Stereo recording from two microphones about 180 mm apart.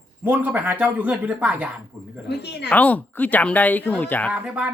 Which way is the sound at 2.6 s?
10° left (ahead or behind).